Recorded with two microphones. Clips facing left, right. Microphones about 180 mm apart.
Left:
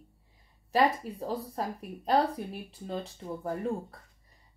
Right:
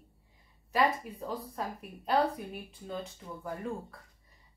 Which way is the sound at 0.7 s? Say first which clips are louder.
Left 3 dB; 35° left (ahead or behind).